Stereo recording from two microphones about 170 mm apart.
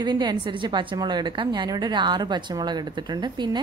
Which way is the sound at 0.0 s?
25° right (ahead or behind).